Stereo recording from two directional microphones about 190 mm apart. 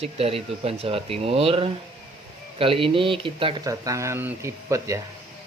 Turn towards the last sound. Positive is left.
turn(degrees=-15)  # may be behind; listen again after turning